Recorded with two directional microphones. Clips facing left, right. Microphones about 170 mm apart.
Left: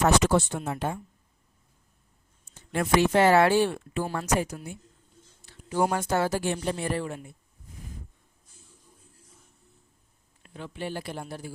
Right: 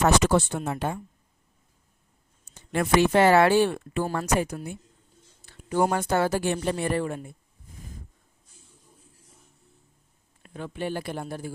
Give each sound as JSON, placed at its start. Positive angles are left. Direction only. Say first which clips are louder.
{"t": 0.0, "sound": "speech", "louder": "right 1 dB", "side_deg": -65}
{"t": 2.7, "sound": "speech", "louder": "right 2 dB", "side_deg": -65}
{"t": 4.0, "sound": "speech", "louder": "right 3 dB", "side_deg": -45}
{"t": 4.4, "sound": "speech", "louder": "right 2 dB", "side_deg": -55}
{"t": 10.4, "sound": "speech", "louder": "right 4 dB", "side_deg": -50}